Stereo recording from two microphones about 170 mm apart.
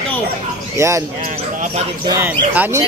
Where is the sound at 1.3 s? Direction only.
40° right (ahead or behind).